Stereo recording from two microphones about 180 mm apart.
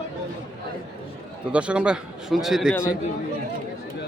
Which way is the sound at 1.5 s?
5° right (ahead or behind).